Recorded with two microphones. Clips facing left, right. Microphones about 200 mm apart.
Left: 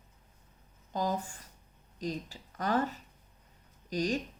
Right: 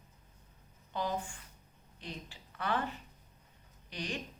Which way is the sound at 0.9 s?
40° left (ahead or behind).